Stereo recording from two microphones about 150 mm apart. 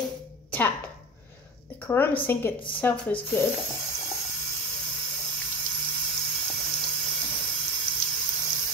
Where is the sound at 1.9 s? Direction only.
15° left (ahead or behind).